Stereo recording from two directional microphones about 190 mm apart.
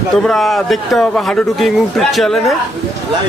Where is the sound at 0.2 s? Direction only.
Centre (ahead or behind).